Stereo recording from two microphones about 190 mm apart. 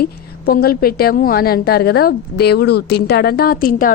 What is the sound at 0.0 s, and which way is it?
A woman's voice, 55° left (ahead or behind).